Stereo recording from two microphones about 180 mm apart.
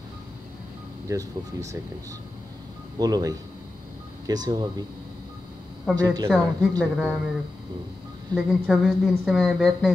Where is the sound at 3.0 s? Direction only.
20° right (ahead or behind).